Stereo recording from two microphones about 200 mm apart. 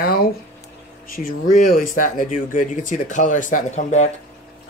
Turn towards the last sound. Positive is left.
turn(degrees=35)  # may be behind; listen again after turning